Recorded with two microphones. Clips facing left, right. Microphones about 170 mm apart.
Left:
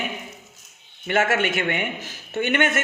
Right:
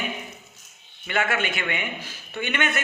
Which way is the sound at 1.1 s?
45° left (ahead or behind).